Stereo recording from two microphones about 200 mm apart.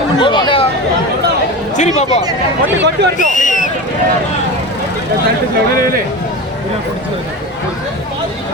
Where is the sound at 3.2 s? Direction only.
40° left (ahead or behind).